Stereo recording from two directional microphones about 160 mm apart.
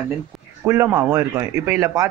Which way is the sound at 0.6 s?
15° right (ahead or behind).